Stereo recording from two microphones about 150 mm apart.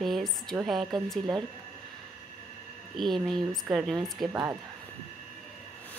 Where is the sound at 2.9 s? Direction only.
Centre (ahead or behind).